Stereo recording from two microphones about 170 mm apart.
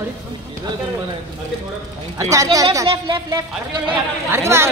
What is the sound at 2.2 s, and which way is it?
A woman's voice, 20° right (ahead or behind).